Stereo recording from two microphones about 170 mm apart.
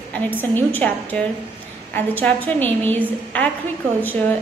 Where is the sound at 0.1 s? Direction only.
10° left (ahead or behind).